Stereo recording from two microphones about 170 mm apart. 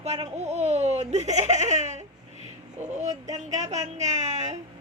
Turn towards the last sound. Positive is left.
turn(degrees=-40)  # may be behind; listen again after turning